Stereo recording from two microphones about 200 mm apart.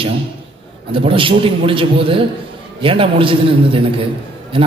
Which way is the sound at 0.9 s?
25° right (ahead or behind).